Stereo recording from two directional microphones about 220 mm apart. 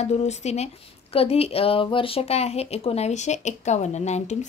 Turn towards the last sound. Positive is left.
turn(degrees=30)  # may be behind; listen again after turning